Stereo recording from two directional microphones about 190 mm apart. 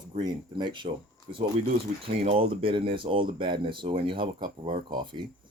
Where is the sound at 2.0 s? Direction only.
30° right (ahead or behind).